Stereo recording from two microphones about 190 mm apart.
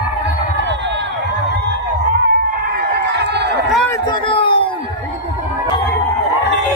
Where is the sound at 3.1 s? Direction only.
60° right (ahead or behind).